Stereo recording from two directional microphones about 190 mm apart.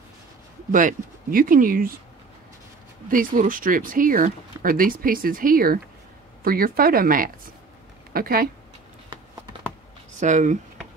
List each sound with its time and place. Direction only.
0.7 s speech: 45° right (ahead or behind)
3.1 s speech: 45° right (ahead or behind)
10.2 s speech: 40° right (ahead or behind)